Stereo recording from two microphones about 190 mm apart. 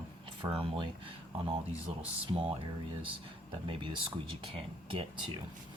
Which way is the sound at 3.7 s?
25° right (ahead or behind).